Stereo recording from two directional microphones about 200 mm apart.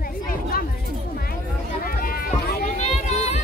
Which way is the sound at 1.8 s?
45° left (ahead or behind).